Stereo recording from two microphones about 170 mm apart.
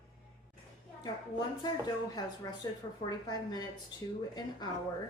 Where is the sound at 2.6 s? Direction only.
20° left (ahead or behind).